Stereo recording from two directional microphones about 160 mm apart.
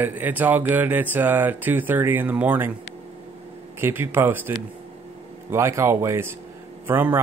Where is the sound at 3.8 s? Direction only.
15° right (ahead or behind).